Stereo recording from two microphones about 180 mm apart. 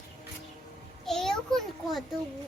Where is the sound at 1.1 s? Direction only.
Centre (ahead or behind).